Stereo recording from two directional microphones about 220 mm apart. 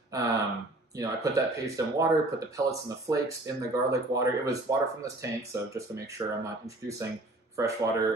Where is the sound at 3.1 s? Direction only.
15° right (ahead or behind).